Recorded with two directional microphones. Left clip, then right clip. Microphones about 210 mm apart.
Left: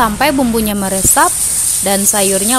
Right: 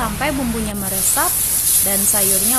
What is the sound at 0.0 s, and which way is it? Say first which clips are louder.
Speech: left 9 dB; 50° left (ahead or behind).